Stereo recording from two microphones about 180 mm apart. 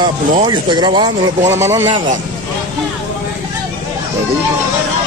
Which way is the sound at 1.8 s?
35° right (ahead or behind).